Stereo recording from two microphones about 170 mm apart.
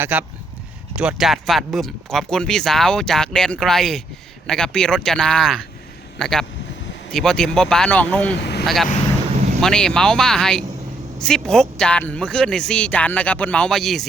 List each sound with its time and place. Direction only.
0.0 s speech: 10° right (ahead or behind); by 8.4 s 10° left (ahead or behind)
8.4 s vehicle: 80° left
8.6 s speech: centre (ahead or behind)